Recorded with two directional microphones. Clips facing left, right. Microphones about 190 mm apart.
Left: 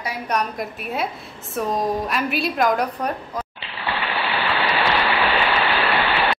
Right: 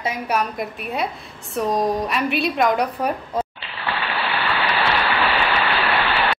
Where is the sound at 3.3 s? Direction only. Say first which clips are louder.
Right 5 dB; 25° right (ahead or behind).